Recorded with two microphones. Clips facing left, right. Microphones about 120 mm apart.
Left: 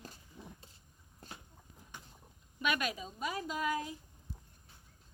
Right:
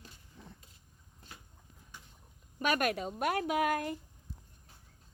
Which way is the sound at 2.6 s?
50° right (ahead or behind).